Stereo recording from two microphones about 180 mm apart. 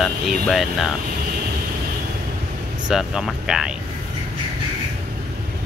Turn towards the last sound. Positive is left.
turn(degrees=0)  # may be behind; listen again after turning